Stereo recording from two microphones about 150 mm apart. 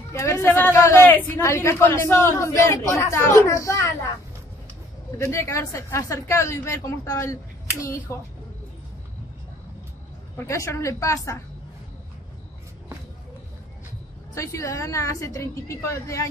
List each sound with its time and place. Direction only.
0.1 s speech: 20° left (ahead or behind)
5.2 s speech: 20° left (ahead or behind)
10.3 s speech: 20° left (ahead or behind)
14.3 s speech: 20° left (ahead or behind)